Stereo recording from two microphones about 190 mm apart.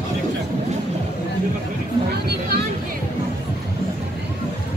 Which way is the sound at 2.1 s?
60° right (ahead or behind).